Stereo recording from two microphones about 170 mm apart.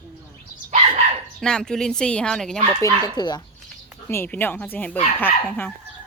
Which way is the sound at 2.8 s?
20° left (ahead or behind).